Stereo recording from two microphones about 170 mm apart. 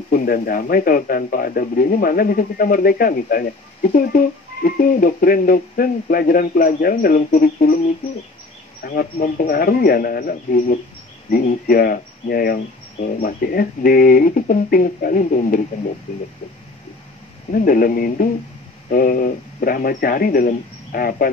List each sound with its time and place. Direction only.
0.1 s a man's voice: 55° left (ahead or behind)
8.8 s a man's voice: 55° left (ahead or behind)
17.5 s a man's voice: 55° left (ahead or behind)